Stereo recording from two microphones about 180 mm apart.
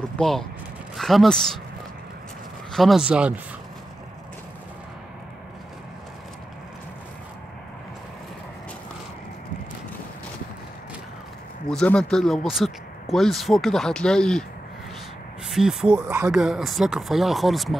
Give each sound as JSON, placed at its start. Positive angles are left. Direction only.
{"t": 0.2, "sound": "speech", "side_deg": 0}
{"t": 2.7, "sound": "speech", "side_deg": 0}
{"t": 11.7, "sound": "speech", "side_deg": 5}
{"t": 15.5, "sound": "speech", "side_deg": -5}